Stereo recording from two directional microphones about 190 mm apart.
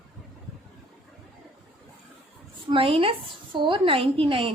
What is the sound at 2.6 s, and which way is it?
A woman's voice, 30° right (ahead or behind).